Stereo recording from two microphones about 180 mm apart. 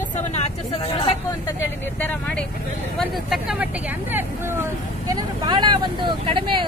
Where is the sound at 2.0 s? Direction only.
10° left (ahead or behind).